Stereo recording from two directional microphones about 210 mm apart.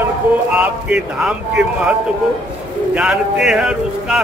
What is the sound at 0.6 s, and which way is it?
Speech, 5° right (ahead or behind).